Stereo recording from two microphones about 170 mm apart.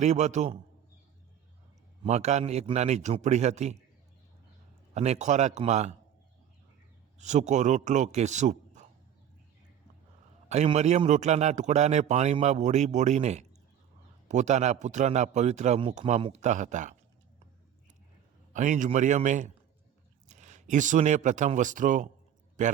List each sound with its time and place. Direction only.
0.0 s a man's voice: 40° right (ahead or behind)
2.0 s a man's voice: 40° right (ahead or behind)
4.9 s a man's voice: 40° right (ahead or behind)
7.2 s a man's voice: 45° right (ahead or behind)
10.5 s a man's voice: 40° right (ahead or behind)
18.5 s a man's voice: 45° right (ahead or behind)